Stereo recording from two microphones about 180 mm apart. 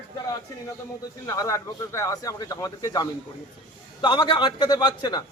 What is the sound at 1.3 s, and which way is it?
A man's voice, 15° left (ahead or behind).